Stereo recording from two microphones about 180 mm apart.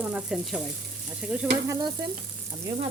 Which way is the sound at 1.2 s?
5° right (ahead or behind).